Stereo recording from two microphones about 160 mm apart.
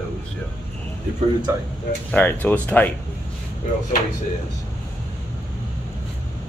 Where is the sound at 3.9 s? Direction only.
55° left (ahead or behind).